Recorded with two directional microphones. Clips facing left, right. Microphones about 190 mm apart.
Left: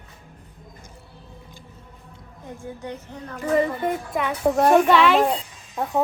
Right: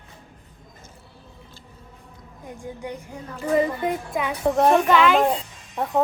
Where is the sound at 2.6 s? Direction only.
10° right (ahead or behind).